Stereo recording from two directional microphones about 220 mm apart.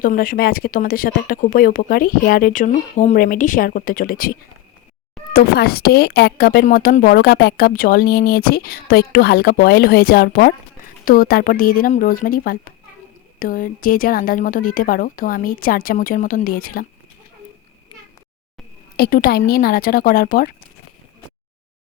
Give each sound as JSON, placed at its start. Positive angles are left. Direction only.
{"t": 0.0, "sound": "a woman's voice", "side_deg": 40}
{"t": 18.9, "sound": "speech", "side_deg": 45}